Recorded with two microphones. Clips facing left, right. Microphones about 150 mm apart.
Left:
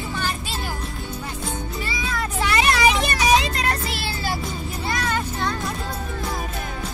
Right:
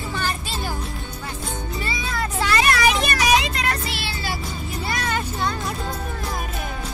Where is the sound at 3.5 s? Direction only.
40° left (ahead or behind).